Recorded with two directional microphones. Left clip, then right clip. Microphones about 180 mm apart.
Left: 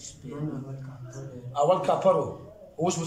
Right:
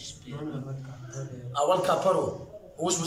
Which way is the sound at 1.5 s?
15° left (ahead or behind).